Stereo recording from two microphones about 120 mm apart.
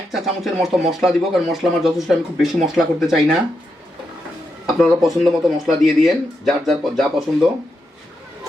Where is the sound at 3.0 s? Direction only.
5° right (ahead or behind).